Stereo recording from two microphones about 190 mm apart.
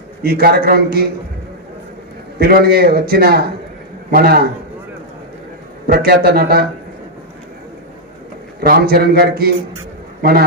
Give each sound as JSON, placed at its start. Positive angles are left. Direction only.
{"t": 0.2, "sound": "a man's voice", "side_deg": -55}
{"t": 2.3, "sound": "a man's voice", "side_deg": -55}
{"t": 5.9, "sound": "a man's voice", "side_deg": -55}
{"t": 8.5, "sound": "a man's voice", "side_deg": -55}